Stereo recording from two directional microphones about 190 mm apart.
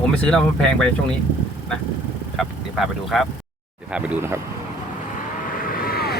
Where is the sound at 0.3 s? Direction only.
5° left (ahead or behind).